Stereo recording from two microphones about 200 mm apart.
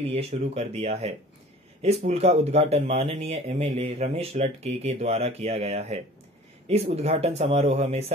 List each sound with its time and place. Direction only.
0.1 s speech: 30° right (ahead or behind)